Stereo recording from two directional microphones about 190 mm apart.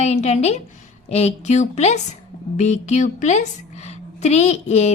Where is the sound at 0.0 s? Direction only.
35° left (ahead or behind).